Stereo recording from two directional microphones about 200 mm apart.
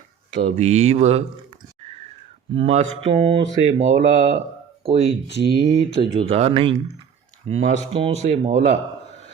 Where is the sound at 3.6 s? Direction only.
35° right (ahead or behind).